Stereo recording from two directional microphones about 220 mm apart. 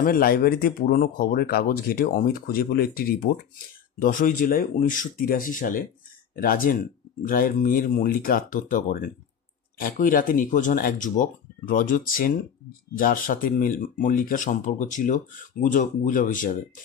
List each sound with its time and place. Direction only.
0.0 s speech: 40° left (ahead or behind)